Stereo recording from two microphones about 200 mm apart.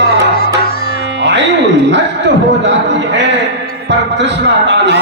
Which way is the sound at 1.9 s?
60° right (ahead or behind).